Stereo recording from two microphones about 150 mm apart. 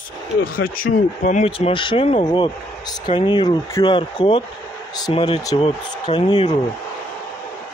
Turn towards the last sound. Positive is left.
turn(degrees=30)  # may be behind; listen again after turning